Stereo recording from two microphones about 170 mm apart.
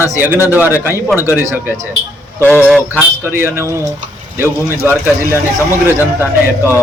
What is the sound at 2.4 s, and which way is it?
Speech, 10° left (ahead or behind).